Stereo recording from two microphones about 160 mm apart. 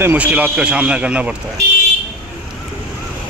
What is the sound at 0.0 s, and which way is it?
A man's voice, 10° right (ahead or behind).